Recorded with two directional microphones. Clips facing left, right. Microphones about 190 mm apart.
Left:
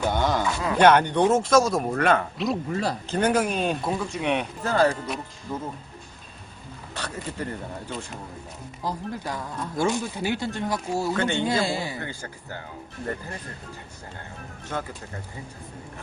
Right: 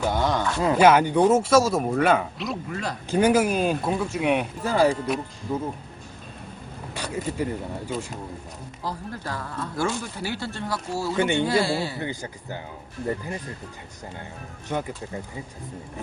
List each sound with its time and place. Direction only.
0.0 s speech: centre (ahead or behind)
5.5 s speech: 15° right (ahead or behind)
6.9 s speech: 10° right (ahead or behind)
8.8 s speech: 15° left (ahead or behind)
11.1 s speech: 15° right (ahead or behind)
11.3 s speech: 20° left (ahead or behind)
11.9 s speech: 15° right (ahead or behind)
14.7 s speech: 15° right (ahead or behind)